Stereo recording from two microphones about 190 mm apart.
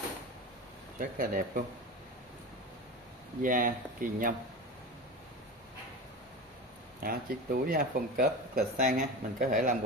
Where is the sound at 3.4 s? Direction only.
45° right (ahead or behind).